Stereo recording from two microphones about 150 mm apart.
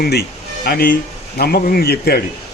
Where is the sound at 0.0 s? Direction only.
90° left.